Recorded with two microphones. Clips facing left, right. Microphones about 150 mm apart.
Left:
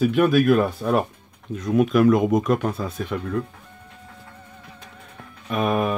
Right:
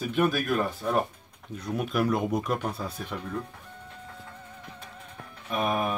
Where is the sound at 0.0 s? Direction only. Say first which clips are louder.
Left 9 dB; 85° left.